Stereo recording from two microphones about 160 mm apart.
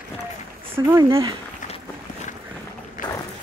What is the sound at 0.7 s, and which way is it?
Speech, 15° right (ahead or behind).